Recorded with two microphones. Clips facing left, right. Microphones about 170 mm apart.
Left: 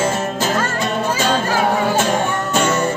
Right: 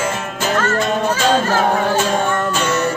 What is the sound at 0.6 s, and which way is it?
Music, 10° left (ahead or behind).